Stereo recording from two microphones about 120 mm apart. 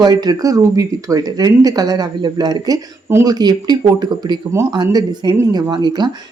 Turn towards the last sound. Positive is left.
turn(degrees=-40)  # may be behind; listen again after turning